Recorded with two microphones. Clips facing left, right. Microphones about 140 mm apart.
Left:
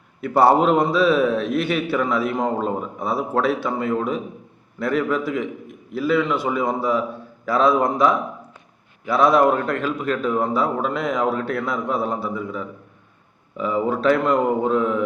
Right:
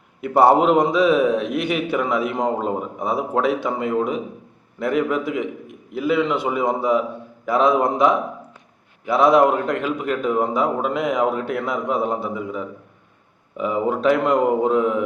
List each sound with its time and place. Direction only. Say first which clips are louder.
0.2 s a man's voice: right 1 dB; 20° right (ahead or behind)